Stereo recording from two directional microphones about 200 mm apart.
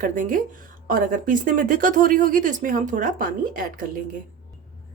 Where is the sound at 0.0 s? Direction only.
40° right (ahead or behind).